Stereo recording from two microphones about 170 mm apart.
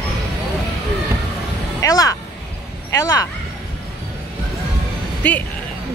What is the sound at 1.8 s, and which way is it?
Speech, 20° left (ahead or behind).